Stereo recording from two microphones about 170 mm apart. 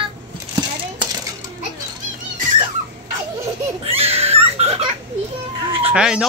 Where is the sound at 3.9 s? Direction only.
35° right (ahead or behind).